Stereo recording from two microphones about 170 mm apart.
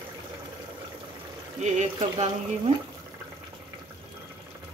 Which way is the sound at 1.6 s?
45° right (ahead or behind).